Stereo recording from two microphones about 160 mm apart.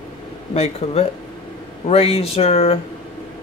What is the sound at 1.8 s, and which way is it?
Speech, 40° left (ahead or behind).